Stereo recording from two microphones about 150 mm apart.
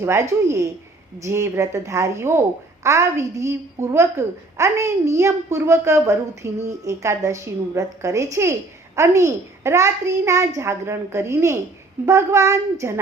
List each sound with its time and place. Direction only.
0.0 s a woman's voice: 20° right (ahead or behind)